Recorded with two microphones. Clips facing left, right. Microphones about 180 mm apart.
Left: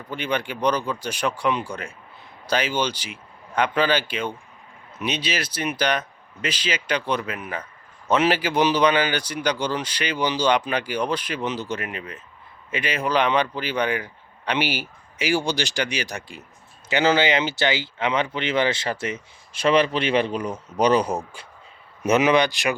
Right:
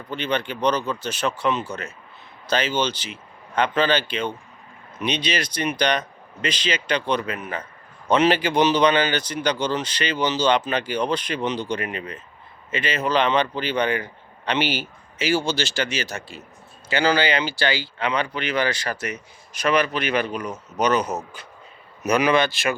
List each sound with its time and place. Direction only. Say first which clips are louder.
0.1 s speech: right 1 dB; 10° left (ahead or behind)